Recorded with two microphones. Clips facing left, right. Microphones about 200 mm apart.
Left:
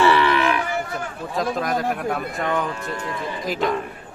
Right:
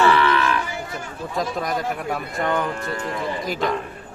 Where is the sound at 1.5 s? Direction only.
Centre (ahead or behind).